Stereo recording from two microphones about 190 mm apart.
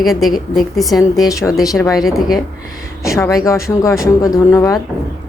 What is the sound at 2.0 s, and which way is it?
Speech, centre (ahead or behind).